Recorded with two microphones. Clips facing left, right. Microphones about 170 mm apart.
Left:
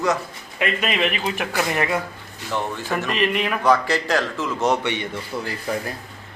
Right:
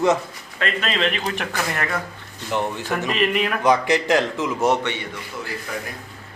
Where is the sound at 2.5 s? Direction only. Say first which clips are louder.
Right 2 dB; 15° right (ahead or behind).